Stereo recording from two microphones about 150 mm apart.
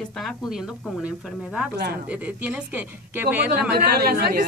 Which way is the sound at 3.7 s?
90° right.